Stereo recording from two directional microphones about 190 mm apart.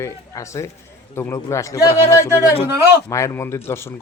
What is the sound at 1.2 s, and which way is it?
A man's voice, 15° left (ahead or behind).